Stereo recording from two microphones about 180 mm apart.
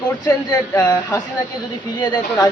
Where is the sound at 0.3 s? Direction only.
10° left (ahead or behind).